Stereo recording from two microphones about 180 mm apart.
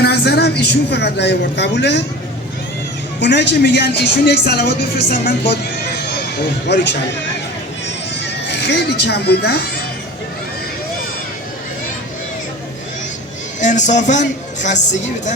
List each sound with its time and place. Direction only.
0.0 s a woman's voice: 65° left (ahead or behind)
3.2 s speech: 75° left (ahead or behind)
8.4 s speech: 70° left (ahead or behind)
13.6 s speech: 45° left (ahead or behind)